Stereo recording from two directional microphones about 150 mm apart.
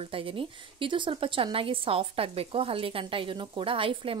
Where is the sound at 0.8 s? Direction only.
35° right (ahead or behind).